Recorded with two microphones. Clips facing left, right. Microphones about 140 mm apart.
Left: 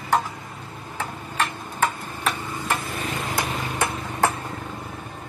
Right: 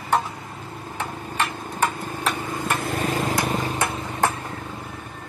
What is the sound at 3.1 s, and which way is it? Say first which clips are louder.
Vehicle: right 2 dB; 35° right (ahead or behind).